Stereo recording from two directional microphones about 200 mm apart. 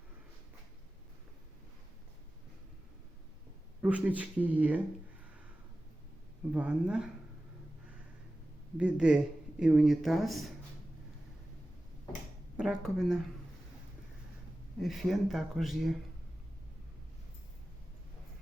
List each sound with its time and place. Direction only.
3.8 s speech: 5° right (ahead or behind)
6.5 s speech: 5° right (ahead or behind)
8.8 s speech: 5° right (ahead or behind)
12.5 s speech: centre (ahead or behind)
14.8 s speech: centre (ahead or behind)